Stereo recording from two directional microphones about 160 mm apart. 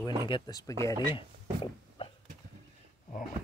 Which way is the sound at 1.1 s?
30° left (ahead or behind).